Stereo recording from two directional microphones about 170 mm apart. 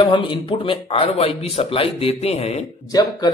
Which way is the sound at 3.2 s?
25° left (ahead or behind).